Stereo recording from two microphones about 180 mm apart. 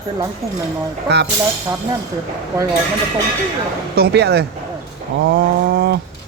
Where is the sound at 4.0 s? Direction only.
65° right (ahead or behind).